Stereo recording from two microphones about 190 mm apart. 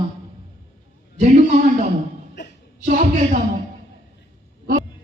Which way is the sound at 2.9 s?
45° right (ahead or behind).